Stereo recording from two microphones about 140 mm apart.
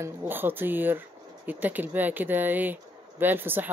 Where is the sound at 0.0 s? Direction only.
15° right (ahead or behind).